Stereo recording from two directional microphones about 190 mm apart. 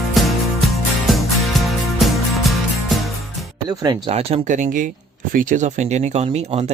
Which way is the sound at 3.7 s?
20° right (ahead or behind).